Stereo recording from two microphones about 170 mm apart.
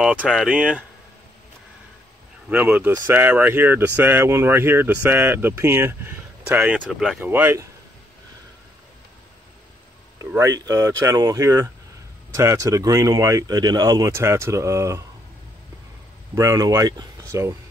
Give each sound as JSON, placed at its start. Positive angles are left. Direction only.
{"t": 0.3, "sound": "speech", "side_deg": -5}
{"t": 2.5, "sound": "speech", "side_deg": -5}
{"t": 10.3, "sound": "speech", "side_deg": -20}
{"t": 16.3, "sound": "speech", "side_deg": -20}